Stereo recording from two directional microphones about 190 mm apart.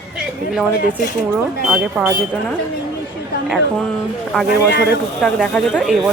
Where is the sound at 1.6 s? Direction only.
5° right (ahead or behind).